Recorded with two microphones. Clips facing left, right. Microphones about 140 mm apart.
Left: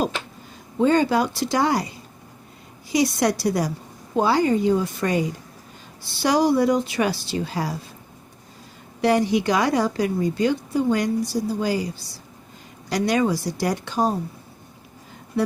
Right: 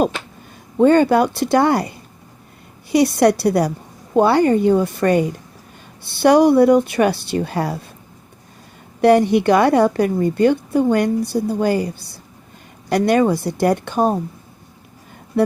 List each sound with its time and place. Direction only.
0.8 s a woman's voice: 60° right (ahead or behind)
9.0 s a woman's voice: 60° right (ahead or behind)